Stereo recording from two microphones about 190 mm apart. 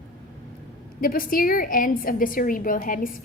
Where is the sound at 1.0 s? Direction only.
50° left (ahead or behind).